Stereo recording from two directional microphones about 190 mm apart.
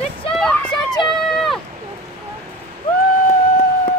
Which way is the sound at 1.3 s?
Centre (ahead or behind).